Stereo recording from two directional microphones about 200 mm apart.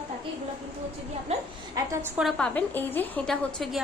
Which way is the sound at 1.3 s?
30° right (ahead or behind).